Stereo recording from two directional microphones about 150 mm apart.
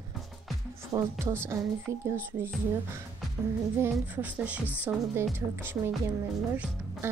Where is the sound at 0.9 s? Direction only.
20° right (ahead or behind).